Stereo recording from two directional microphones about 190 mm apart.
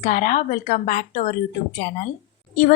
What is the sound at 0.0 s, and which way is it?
Speech, 45° left (ahead or behind).